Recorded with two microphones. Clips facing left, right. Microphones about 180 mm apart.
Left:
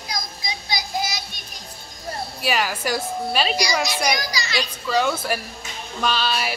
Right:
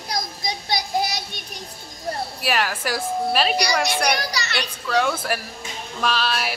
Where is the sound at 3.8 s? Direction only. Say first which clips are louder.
Right 1 dB; 60° right (ahead or behind).